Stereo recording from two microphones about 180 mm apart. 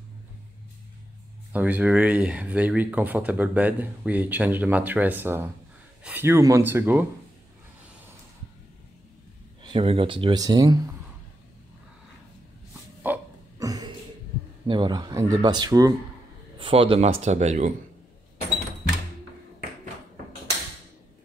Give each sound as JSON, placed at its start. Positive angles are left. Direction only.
{"t": 1.5, "sound": "speech", "side_deg": -10}
{"t": 9.6, "sound": "speech", "side_deg": -30}
{"t": 13.0, "sound": "dog", "side_deg": -15}
{"t": 14.7, "sound": "a man's voice", "side_deg": -25}